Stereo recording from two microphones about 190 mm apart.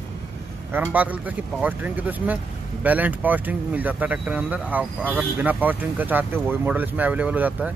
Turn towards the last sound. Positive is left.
turn(degrees=-5)  # may be behind; listen again after turning